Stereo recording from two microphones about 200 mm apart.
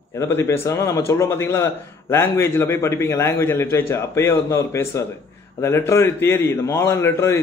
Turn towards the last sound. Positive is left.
turn(degrees=15)  # may be behind; listen again after turning